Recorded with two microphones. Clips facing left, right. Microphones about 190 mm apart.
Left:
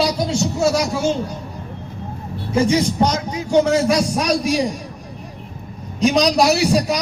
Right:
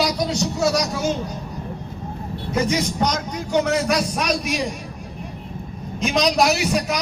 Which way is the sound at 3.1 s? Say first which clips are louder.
Left 3 dB; 5° left (ahead or behind).